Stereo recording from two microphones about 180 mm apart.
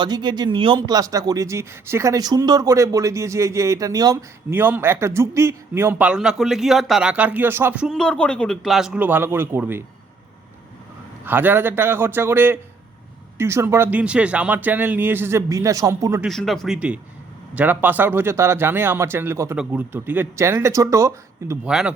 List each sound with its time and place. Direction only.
0.0 s speech: 25° right (ahead or behind)
11.3 s speech: 10° right (ahead or behind)
16.2 s speech: centre (ahead or behind); by 21.7 s 15° right (ahead or behind)
21.7 s speech: 5° right (ahead or behind)